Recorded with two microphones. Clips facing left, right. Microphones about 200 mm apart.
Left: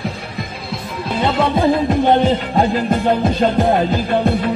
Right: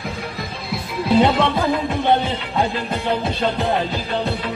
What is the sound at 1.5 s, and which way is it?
Music, 30° left (ahead or behind).